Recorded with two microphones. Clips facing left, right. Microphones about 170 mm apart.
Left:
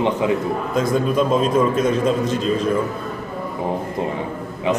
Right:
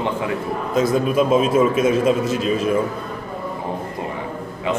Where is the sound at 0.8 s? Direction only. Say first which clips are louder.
Right 2 dB; 5° right (ahead or behind).